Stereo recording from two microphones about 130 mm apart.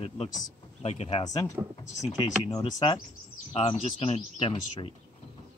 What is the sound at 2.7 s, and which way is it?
Speech, 35° left (ahead or behind).